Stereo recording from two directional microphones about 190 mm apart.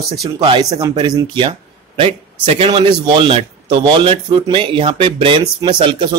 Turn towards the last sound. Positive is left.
turn(degrees=-25)  # may be behind; listen again after turning